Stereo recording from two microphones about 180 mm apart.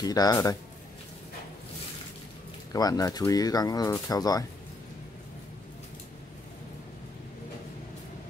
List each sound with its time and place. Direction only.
0.0 s speech: 20° left (ahead or behind)
2.7 s speech: 20° left (ahead or behind)